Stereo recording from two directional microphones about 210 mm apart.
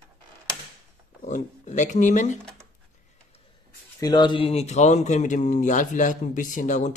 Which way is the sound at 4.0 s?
20° left (ahead or behind).